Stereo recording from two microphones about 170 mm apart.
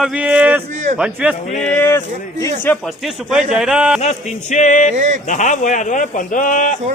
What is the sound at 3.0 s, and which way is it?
Speech, 5° right (ahead or behind).